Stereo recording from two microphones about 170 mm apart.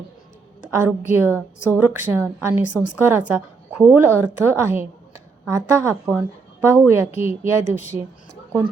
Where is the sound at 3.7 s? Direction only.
10° right (ahead or behind).